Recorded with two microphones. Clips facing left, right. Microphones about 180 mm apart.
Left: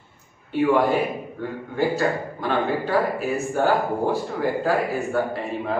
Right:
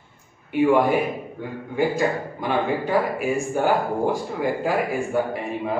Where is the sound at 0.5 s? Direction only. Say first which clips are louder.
Right 1 dB; 15° right (ahead or behind).